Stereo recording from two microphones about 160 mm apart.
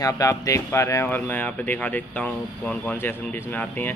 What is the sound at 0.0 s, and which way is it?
Speech, 20° left (ahead or behind).